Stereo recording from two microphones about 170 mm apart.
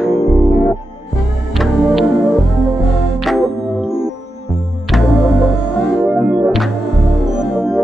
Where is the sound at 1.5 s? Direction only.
Centre (ahead or behind).